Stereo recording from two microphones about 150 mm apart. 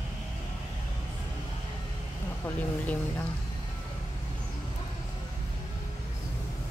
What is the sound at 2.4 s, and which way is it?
Speech, 10° left (ahead or behind).